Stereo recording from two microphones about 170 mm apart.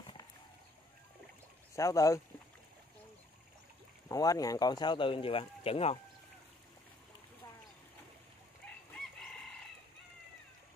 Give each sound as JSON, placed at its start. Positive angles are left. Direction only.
{"t": 0.0, "sound": "a sound", "side_deg": 30}
{"t": 1.8, "sound": "speech", "side_deg": 20}
{"t": 4.1, "sound": "speech", "side_deg": 20}
{"t": 8.6, "sound": "chicken", "side_deg": 10}